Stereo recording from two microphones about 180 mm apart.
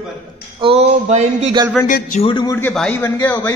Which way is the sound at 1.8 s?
5° left (ahead or behind).